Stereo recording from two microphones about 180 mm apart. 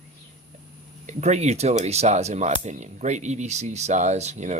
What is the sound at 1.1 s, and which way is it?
Speech, 40° right (ahead or behind).